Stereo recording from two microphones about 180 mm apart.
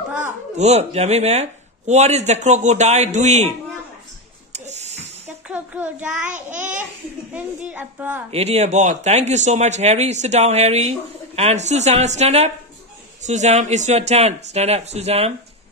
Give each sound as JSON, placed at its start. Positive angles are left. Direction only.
{"t": 0.6, "sound": "speech", "side_deg": -40}
{"t": 4.5, "sound": "a sound", "side_deg": -40}
{"t": 5.2, "sound": "a child's voice", "side_deg": -10}
{"t": 8.3, "sound": "speech", "side_deg": -35}